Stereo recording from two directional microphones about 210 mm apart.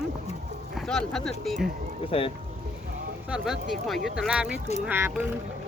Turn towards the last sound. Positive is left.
turn(degrees=-10)  # may be behind; listen again after turning